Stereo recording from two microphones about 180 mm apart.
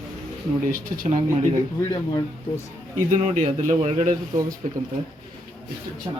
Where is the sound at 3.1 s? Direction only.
40° right (ahead or behind).